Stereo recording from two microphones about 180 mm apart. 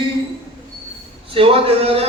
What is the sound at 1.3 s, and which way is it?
Speech, 30° right (ahead or behind).